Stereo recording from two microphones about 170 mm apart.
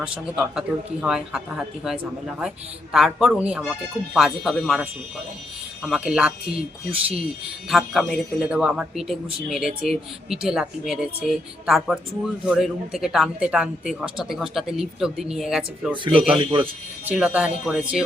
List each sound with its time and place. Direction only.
0.0 s speech: 5° right (ahead or behind)
7.7 s speech: centre (ahead or behind)
16.0 s speech: 30° right (ahead or behind)
17.1 s speech: 10° right (ahead or behind)